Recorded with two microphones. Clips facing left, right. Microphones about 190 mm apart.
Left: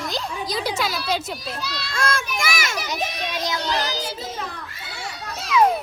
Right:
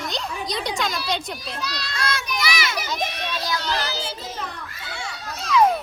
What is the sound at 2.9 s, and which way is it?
A child's voice, 15° left (ahead or behind).